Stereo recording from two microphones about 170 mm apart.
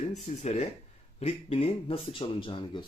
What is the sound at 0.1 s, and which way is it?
Speech, 40° left (ahead or behind).